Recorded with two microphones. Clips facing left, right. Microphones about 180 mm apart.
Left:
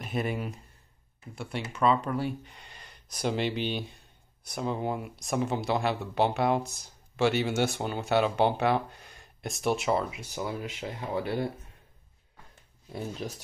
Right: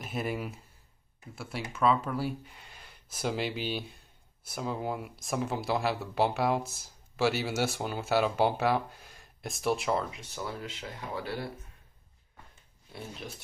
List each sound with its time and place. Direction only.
0.0 s speech: centre (ahead or behind)
10.3 s speech: 20° left (ahead or behind)